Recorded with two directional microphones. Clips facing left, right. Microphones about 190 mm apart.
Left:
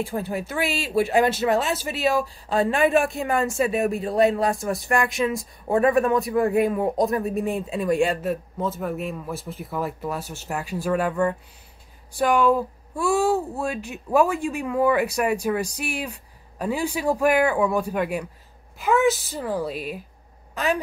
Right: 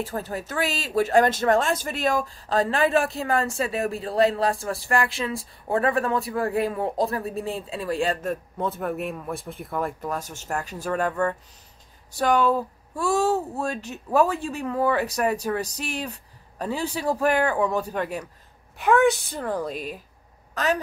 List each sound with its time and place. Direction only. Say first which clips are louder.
0.0 s speech: left 3 dB; 10° left (ahead or behind)